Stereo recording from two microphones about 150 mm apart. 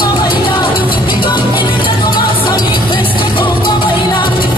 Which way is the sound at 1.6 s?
35° left (ahead or behind).